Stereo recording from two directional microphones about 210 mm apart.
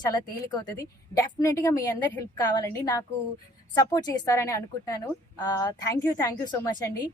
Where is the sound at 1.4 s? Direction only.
15° left (ahead or behind).